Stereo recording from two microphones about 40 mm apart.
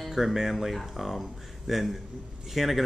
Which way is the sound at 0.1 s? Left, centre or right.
Centre.